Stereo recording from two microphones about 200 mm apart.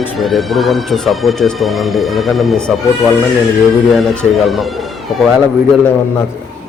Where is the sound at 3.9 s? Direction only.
Centre (ahead or behind).